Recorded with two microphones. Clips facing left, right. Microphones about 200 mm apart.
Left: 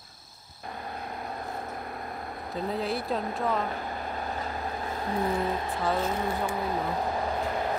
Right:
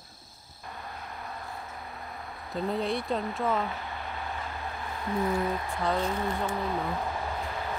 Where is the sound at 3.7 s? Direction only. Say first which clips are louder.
Left 4 dB; 40° left (ahead or behind).